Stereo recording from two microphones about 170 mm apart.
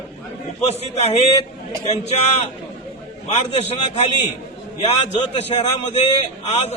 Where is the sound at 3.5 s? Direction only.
40° left (ahead or behind).